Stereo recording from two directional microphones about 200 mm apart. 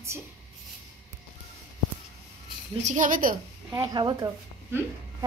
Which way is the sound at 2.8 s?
40° right (ahead or behind).